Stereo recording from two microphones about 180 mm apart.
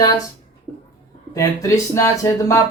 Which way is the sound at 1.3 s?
20° left (ahead or behind).